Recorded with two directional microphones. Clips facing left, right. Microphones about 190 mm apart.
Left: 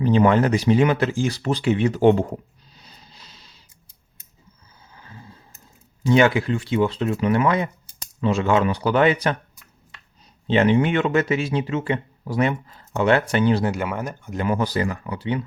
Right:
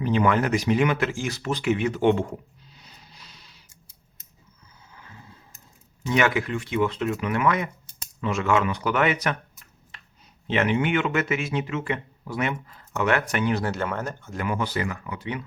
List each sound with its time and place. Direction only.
0.0 s speech: 30° left (ahead or behind)
4.9 s a sound: 35° left (ahead or behind)
6.0 s speech: 30° left (ahead or behind)
10.4 s speech: 30° left (ahead or behind)
13.7 s speech: 10° left (ahead or behind)
14.3 s speech: 35° left (ahead or behind)